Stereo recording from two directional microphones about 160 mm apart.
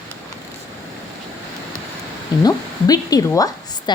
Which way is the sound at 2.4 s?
25° left (ahead or behind).